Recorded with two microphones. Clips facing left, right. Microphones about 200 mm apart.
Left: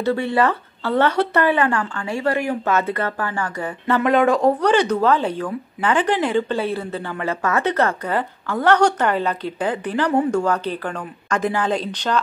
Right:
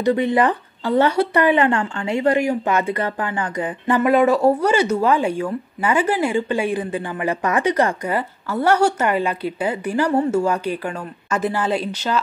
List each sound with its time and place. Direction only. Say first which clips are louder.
0.0 s speech: right 2 dB; 15° right (ahead or behind)
4.0 s speech: right 1 dB; 5° right (ahead or behind)